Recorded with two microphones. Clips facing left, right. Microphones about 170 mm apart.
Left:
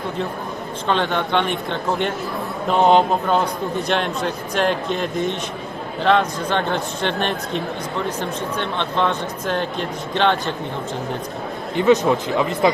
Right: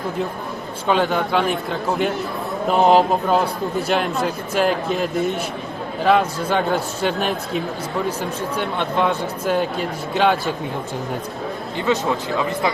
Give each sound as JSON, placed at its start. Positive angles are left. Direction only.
{"t": 0.9, "sound": "a man's voice", "side_deg": -5}
{"t": 11.8, "sound": "a man's voice", "side_deg": 20}